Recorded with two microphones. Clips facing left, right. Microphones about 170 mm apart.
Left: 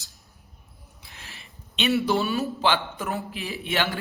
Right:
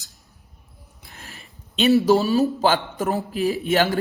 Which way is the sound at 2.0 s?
35° right (ahead or behind).